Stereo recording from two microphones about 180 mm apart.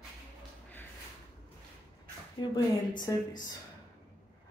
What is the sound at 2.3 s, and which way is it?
Speech, 25° left (ahead or behind).